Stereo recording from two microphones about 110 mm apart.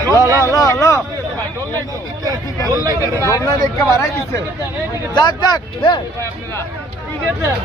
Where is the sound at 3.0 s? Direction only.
30° left (ahead or behind).